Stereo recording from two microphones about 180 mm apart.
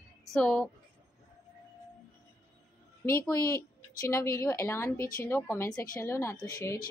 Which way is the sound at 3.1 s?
15° left (ahead or behind).